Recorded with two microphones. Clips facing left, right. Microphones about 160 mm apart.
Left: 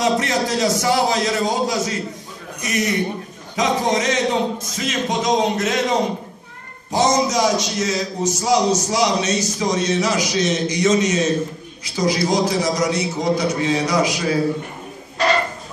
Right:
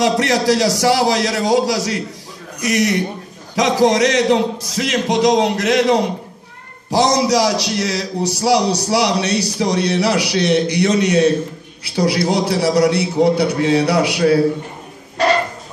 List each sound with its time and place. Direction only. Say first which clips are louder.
0.0 s a man's voice: right 4 dB; 75° right (ahead or behind)